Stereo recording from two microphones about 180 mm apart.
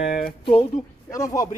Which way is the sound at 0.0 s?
50° left (ahead or behind).